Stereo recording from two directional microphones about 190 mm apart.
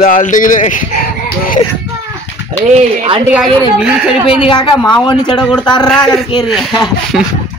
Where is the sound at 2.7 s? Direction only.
35° right (ahead or behind).